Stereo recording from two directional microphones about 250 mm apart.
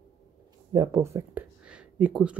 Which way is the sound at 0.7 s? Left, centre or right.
Centre.